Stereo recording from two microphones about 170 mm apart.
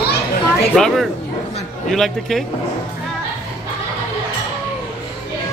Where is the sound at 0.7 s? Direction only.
Centre (ahead or behind).